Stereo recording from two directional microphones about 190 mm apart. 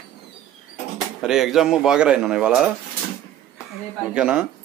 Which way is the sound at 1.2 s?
Centre (ahead or behind).